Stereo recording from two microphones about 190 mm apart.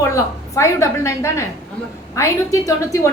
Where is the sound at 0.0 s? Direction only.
15° left (ahead or behind).